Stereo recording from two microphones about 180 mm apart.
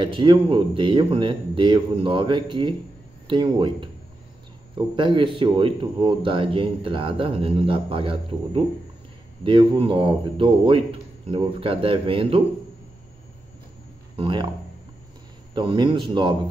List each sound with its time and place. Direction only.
0.0 s speech: 25° right (ahead or behind)
14.1 s speech: 25° right (ahead or behind)
15.5 s speech: 25° right (ahead or behind)